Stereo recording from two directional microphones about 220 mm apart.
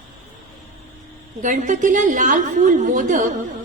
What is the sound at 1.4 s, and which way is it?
A woman's voice, 35° right (ahead or behind).